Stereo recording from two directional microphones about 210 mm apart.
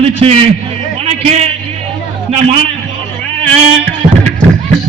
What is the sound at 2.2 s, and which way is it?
Speech, 30° right (ahead or behind).